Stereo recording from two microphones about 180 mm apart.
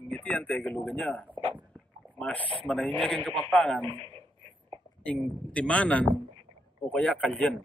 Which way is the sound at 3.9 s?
30° right (ahead or behind).